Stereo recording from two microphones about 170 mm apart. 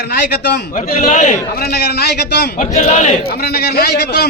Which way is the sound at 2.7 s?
40° left (ahead or behind).